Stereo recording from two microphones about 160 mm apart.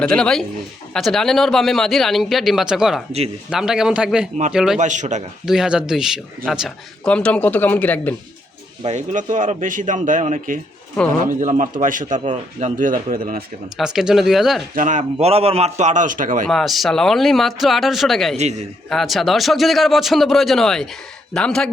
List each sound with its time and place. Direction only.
0.0 s a man's voice: 5° left (ahead or behind)
4.8 s speech: 50° right (ahead or behind)
5.5 s a man's voice: 5° right (ahead or behind)
8.8 s speech: 45° right (ahead or behind); by 13.4 s 60° right (ahead or behind)
13.7 s a man's voice: 5° right (ahead or behind)
14.8 s speech: 50° right (ahead or behind)
16.5 s a man's voice: centre (ahead or behind)